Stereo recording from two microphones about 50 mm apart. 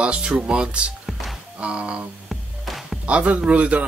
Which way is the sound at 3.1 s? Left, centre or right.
Right.